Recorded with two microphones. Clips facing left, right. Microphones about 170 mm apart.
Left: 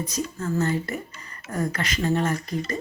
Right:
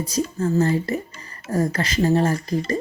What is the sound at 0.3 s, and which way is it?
Speech, 30° right (ahead or behind).